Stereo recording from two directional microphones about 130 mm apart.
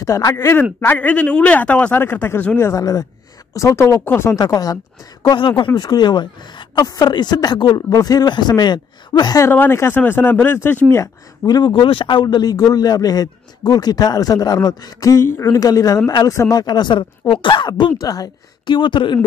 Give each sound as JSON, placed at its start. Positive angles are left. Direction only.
{"t": 0.0, "sound": "speech", "side_deg": 25}
{"t": 2.7, "sound": "a man's voice", "side_deg": 30}
{"t": 9.5, "sound": "speech", "side_deg": 15}
{"t": 11.4, "sound": "a man's voice", "side_deg": 35}